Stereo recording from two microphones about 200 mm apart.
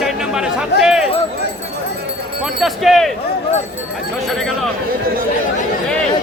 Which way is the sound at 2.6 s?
Centre (ahead or behind).